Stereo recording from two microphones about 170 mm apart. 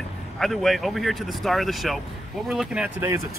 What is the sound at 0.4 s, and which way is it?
Speech, centre (ahead or behind).